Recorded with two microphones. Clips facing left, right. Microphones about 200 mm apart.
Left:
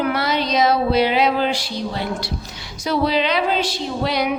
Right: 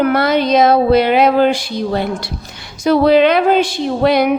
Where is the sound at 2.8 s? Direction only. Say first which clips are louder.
Right 9 dB; 55° right (ahead or behind).